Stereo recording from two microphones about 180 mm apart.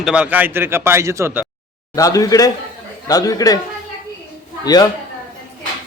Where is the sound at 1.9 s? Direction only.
20° left (ahead or behind).